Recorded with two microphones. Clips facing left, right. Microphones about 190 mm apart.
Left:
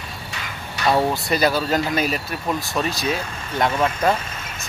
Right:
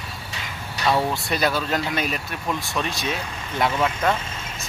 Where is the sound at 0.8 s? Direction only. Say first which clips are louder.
Left 3 dB; 25° left (ahead or behind).